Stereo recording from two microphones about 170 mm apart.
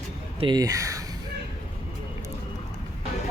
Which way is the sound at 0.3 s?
25° right (ahead or behind).